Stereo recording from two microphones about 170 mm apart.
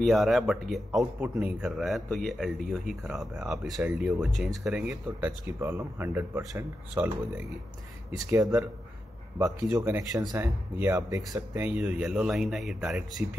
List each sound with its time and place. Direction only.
0.0 s a man's voice: centre (ahead or behind)
9.4 s speech: 20° right (ahead or behind); by 13.0 s 5° right (ahead or behind)